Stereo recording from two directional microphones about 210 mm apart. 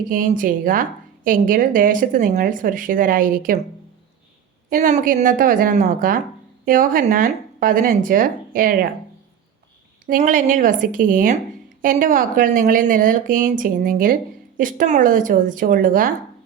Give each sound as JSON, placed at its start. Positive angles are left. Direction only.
{"t": 0.1, "sound": "a woman's voice", "side_deg": -40}
{"t": 4.7, "sound": "a woman's voice", "side_deg": -35}
{"t": 10.1, "sound": "a woman's voice", "side_deg": -35}